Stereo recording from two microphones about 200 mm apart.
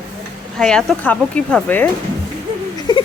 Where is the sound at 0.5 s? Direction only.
Centre (ahead or behind).